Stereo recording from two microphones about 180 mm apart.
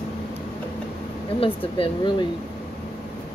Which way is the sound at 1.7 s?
30° left (ahead or behind).